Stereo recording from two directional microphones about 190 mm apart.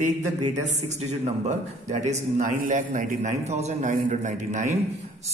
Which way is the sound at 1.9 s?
40° right (ahead or behind).